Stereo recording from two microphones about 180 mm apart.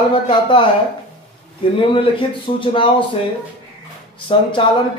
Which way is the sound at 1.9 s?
30° left (ahead or behind).